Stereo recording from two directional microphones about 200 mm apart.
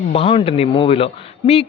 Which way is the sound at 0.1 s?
30° left (ahead or behind).